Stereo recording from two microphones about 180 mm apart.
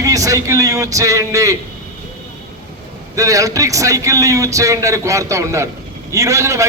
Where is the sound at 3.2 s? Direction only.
20° right (ahead or behind).